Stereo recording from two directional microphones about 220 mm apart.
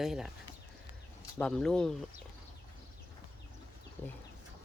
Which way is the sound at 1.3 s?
5° left (ahead or behind).